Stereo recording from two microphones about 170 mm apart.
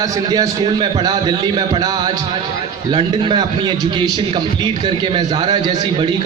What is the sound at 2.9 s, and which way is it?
A man's voice, 25° right (ahead or behind).